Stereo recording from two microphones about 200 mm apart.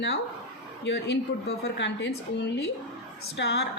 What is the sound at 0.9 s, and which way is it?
A woman's voice, 60° left (ahead or behind).